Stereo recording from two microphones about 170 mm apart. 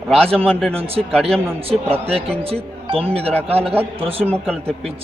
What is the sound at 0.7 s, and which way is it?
Speech, 35° right (ahead or behind).